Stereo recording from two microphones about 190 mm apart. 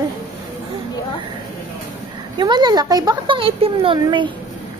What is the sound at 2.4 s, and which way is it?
Speech, 20° right (ahead or behind).